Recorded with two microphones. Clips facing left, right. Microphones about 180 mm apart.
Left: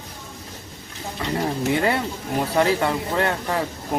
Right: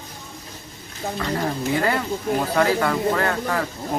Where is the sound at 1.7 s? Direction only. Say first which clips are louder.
Even; 25° left (ahead or behind).